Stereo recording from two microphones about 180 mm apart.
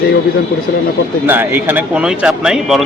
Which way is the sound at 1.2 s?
10° right (ahead or behind).